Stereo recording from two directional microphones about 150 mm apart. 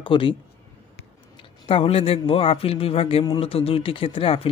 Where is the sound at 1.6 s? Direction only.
40° left (ahead or behind).